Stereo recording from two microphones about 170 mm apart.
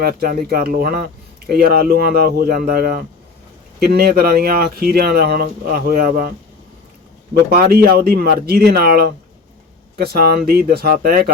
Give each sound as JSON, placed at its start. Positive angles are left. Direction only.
{"t": 0.0, "sound": "speech", "side_deg": -60}
{"t": 7.5, "sound": "speech", "side_deg": -65}